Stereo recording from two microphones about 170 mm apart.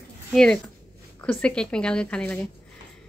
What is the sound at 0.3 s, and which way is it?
Speech, 5° left (ahead or behind).